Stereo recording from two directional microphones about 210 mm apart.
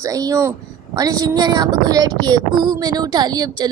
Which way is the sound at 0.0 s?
15° right (ahead or behind).